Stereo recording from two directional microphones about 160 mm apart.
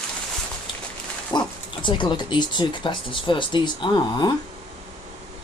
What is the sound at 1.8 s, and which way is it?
Speech, 30° left (ahead or behind).